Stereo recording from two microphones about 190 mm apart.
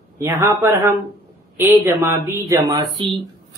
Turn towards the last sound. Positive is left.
turn(degrees=-20)  # may be behind; listen again after turning